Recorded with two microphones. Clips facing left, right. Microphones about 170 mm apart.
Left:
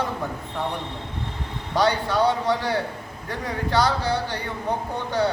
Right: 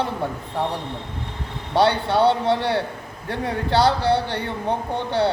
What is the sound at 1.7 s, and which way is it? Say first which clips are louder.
Speech: right 3 dB; 30° right (ahead or behind).